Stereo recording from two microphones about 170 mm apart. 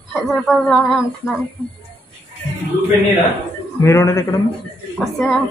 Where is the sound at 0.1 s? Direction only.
Centre (ahead or behind).